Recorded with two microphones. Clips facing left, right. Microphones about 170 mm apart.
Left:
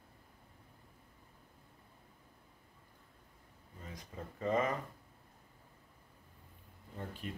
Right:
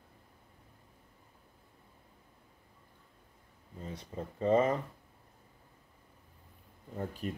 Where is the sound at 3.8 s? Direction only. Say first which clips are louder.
Right 6 dB; 30° right (ahead or behind).